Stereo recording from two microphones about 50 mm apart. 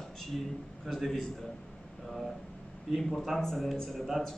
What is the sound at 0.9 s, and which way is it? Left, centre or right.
Speech, centre.